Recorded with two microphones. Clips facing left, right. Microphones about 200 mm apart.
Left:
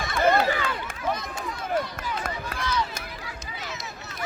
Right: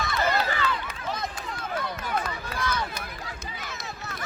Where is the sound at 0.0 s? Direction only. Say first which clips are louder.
Left 5 dB; 55° left (ahead or behind).